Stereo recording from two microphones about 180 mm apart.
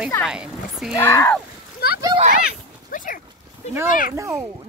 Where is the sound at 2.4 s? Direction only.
50° left (ahead or behind).